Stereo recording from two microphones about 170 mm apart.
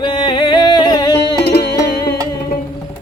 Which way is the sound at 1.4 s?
75° left (ahead or behind).